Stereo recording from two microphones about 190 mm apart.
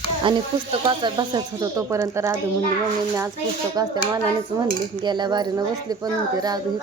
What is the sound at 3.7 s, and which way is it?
Speech, 20° right (ahead or behind).